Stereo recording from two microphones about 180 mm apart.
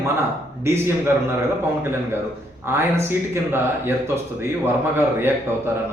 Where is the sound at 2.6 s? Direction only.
15° right (ahead or behind).